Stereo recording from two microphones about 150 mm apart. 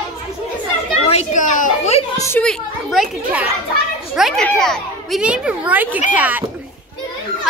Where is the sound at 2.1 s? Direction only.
20° left (ahead or behind).